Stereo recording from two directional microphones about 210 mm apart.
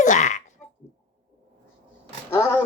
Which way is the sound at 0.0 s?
35° left (ahead or behind).